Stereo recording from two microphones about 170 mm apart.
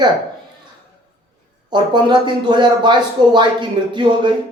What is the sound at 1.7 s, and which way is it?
Speech, 25° right (ahead or behind).